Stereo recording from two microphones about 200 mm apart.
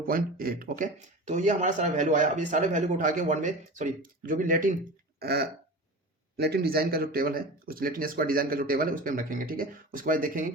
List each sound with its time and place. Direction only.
0.1 s speech: 45° right (ahead or behind)
5.2 s speech: 50° right (ahead or behind)